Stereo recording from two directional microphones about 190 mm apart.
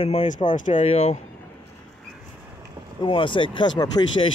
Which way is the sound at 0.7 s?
30° left (ahead or behind).